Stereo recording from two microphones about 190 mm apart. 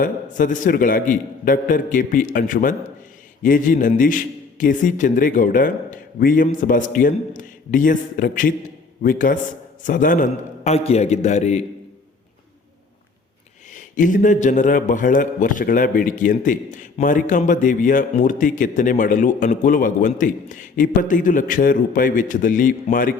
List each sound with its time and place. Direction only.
0.0 s a man's voice: 45° left (ahead or behind)
13.7 s a man's voice: 45° left (ahead or behind)